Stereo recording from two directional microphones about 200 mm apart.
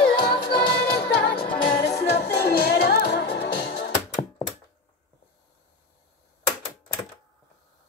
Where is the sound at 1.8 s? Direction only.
55° left (ahead or behind).